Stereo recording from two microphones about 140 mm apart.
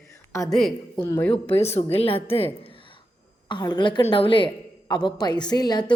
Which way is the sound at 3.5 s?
30° left (ahead or behind).